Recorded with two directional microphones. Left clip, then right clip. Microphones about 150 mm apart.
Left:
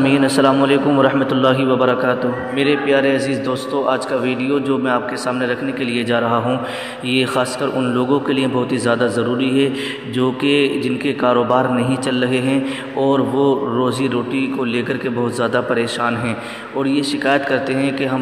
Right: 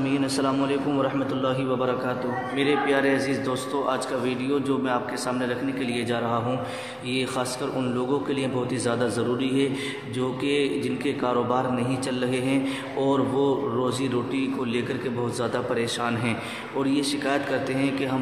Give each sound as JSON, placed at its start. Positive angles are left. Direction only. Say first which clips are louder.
{"t": 0.0, "sound": "a man's voice", "louder": "left 11 dB", "side_deg": 50}